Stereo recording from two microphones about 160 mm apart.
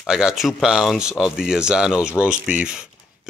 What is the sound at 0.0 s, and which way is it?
Speech, 5° right (ahead or behind).